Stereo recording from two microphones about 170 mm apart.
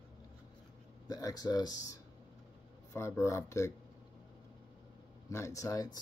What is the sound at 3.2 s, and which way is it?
Speech, 15° left (ahead or behind).